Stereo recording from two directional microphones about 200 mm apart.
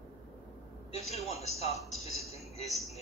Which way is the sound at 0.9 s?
30° left (ahead or behind).